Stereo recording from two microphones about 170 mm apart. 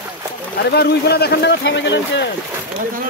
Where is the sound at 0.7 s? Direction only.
70° left (ahead or behind); by 2.2 s 90° left.